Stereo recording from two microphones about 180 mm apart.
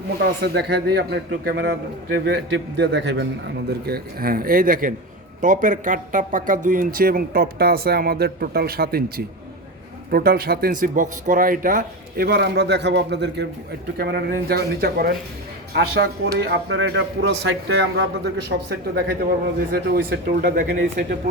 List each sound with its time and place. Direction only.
0.2 s speech: 65° right (ahead or behind)
1.1 s a man's voice: 80° right
2.2 s speech: 70° right (ahead or behind)
15.7 s a man's voice: 75° right (ahead or behind)
19.7 s speech: 55° right (ahead or behind)